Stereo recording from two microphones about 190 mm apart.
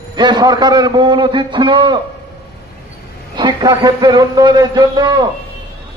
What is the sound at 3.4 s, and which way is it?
A man's voice, 20° right (ahead or behind).